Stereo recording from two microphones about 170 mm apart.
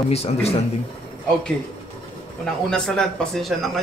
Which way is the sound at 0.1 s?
35° left (ahead or behind).